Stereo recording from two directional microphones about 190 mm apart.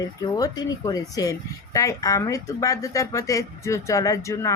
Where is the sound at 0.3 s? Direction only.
20° left (ahead or behind).